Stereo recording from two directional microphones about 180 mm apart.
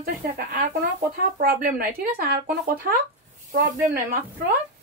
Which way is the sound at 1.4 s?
55° right (ahead or behind).